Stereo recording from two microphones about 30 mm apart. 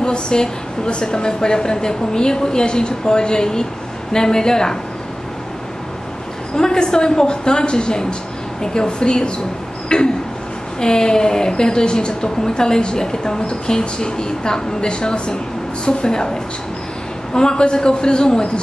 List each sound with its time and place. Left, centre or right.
0.0 s a woman's voice: left
6.5 s a woman's voice: left
9.9 s a sound: left
10.8 s a woman's voice: left
17.3 s a woman's voice: left